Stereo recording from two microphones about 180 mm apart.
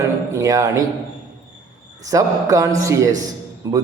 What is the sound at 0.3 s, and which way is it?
Speech, 20° right (ahead or behind).